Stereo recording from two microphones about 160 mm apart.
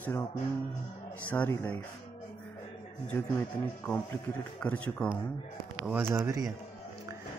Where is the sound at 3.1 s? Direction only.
10° left (ahead or behind).